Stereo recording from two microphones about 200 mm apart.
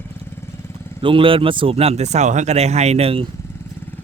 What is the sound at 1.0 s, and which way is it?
A man's voice, 25° right (ahead or behind).